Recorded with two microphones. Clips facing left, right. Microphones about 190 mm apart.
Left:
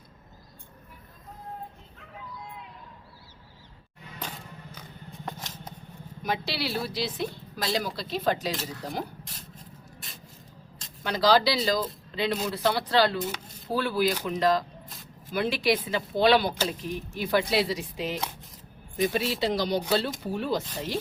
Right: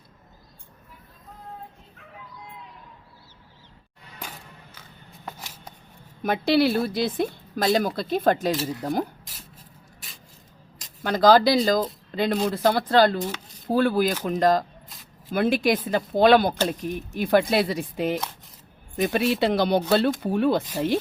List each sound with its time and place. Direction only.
5.2 s shuffling cards: 10° right (ahead or behind)
6.2 s a woman's voice: 55° right (ahead or behind)
11.0 s a woman's voice: 50° right (ahead or behind)